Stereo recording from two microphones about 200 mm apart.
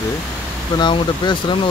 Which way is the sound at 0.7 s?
20° left (ahead or behind).